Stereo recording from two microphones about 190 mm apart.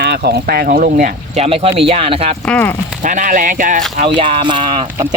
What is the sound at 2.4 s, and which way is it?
Speech, 10° left (ahead or behind).